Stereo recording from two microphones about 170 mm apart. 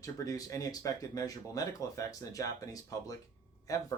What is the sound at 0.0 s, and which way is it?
Speech, 20° left (ahead or behind).